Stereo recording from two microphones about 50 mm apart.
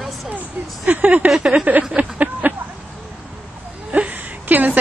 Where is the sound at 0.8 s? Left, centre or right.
Right.